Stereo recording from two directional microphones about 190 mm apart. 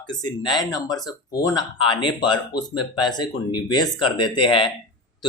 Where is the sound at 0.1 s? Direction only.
20° left (ahead or behind).